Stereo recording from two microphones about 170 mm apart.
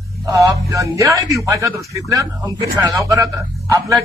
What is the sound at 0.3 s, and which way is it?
A man's voice, 20° right (ahead or behind).